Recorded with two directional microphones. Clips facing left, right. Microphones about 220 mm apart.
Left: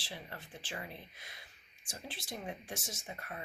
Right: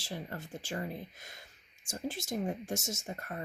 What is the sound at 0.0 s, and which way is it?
Speech, 45° right (ahead or behind).